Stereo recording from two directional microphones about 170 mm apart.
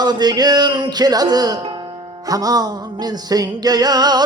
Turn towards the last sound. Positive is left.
turn(degrees=-25)  # may be behind; listen again after turning